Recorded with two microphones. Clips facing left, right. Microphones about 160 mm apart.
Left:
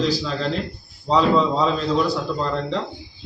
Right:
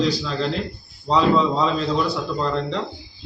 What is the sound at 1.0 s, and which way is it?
A man's voice, centre (ahead or behind).